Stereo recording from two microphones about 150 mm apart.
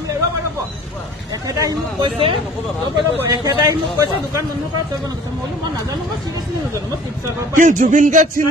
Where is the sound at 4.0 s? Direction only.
20° right (ahead or behind).